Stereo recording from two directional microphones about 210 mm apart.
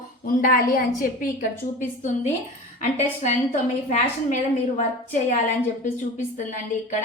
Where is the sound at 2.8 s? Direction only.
35° left (ahead or behind).